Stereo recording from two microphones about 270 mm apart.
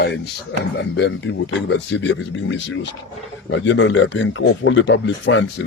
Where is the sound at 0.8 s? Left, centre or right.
Left.